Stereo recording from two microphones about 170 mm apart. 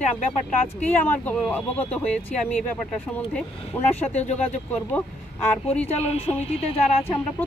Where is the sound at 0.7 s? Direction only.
10° left (ahead or behind).